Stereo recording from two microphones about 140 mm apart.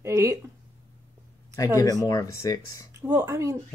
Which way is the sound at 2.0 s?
20° left (ahead or behind).